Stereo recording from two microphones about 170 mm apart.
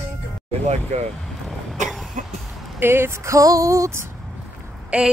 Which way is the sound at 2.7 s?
15° right (ahead or behind).